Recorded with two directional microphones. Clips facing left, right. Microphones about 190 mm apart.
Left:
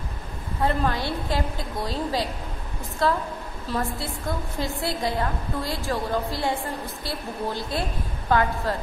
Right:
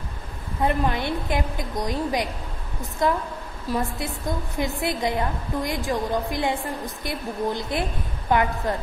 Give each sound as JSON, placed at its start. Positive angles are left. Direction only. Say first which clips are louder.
{"t": 0.6, "sound": "a woman's voice", "louder": "right 1 dB", "side_deg": -20}